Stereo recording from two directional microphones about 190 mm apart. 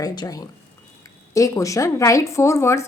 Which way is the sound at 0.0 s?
20° left (ahead or behind).